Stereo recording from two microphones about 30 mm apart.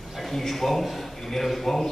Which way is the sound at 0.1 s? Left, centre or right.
Centre.